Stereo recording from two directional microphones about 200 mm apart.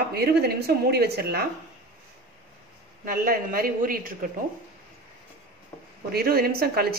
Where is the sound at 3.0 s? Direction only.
45° right (ahead or behind).